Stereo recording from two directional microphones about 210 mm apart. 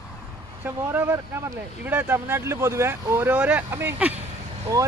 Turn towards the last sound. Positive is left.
turn(degrees=-15)  # may be behind; listen again after turning